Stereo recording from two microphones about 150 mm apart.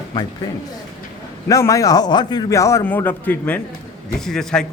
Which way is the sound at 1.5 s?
20° left (ahead or behind).